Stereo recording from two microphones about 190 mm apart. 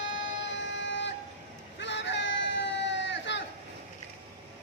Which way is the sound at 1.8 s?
70° left (ahead or behind).